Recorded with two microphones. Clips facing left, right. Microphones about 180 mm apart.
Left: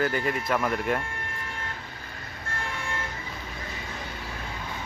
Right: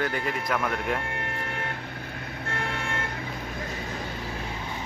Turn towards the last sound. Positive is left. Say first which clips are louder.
# right 3 dB
turn(degrees=-60)  # may be behind; listen again after turning